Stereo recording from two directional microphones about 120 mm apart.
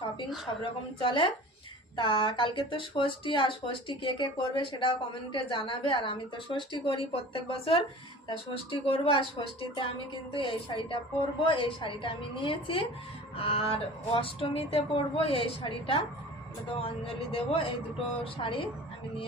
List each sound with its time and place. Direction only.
0.6 s speech: 45° left (ahead or behind)
17.3 s speech: 50° left (ahead or behind)